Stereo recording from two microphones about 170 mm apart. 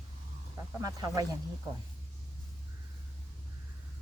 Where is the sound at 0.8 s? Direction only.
20° right (ahead or behind).